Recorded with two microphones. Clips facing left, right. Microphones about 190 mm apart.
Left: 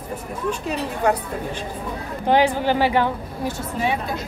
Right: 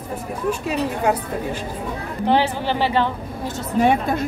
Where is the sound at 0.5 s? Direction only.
5° right (ahead or behind).